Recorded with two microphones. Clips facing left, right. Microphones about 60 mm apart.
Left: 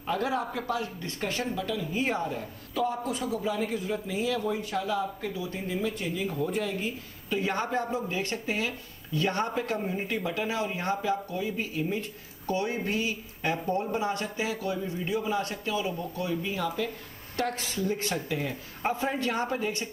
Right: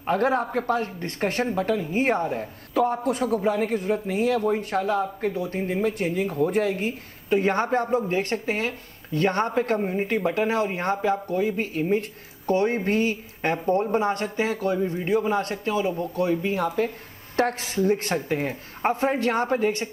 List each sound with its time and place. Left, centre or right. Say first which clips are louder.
0.0 s speech: right 6 dB; right